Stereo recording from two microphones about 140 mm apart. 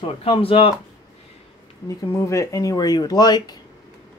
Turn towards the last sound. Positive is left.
turn(degrees=30)  # may be behind; listen again after turning